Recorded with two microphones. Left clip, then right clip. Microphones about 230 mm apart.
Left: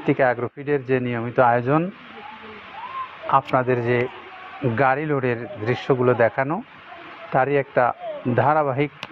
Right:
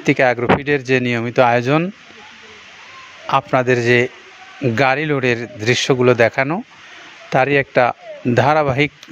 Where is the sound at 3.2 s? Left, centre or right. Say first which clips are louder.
Right 4 dB; right.